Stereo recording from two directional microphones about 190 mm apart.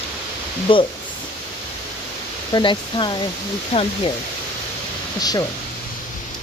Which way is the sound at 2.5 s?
25° left (ahead or behind).